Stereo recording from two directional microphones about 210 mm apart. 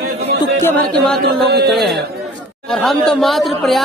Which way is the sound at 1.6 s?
Centre (ahead or behind).